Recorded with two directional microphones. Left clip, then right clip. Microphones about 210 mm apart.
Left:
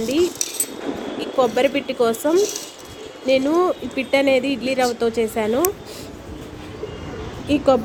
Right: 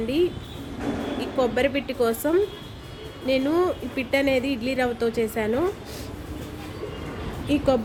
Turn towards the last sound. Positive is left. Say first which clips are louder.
# left 4 dB
turn(degrees=15)  # may be behind; listen again after turning